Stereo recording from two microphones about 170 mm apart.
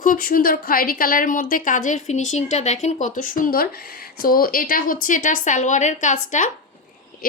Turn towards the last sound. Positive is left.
turn(degrees=45)  # may be behind; listen again after turning